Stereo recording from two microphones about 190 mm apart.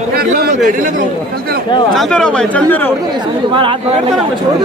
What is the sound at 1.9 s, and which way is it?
Speech, 5° left (ahead or behind).